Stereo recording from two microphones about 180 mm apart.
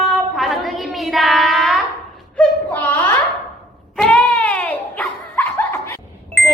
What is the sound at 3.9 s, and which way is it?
Dog, 5° left (ahead or behind).